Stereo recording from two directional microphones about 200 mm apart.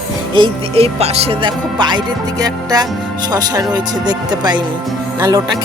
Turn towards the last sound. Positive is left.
turn(degrees=-20)  # may be behind; listen again after turning